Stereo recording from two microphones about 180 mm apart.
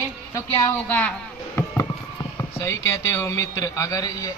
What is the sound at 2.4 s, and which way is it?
A man's voice, 15° left (ahead or behind).